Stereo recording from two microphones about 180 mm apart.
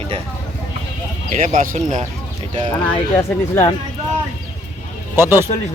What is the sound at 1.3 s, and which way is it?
Speech, 40° right (ahead or behind).